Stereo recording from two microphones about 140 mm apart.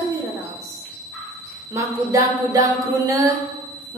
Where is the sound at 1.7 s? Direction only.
25° right (ahead or behind).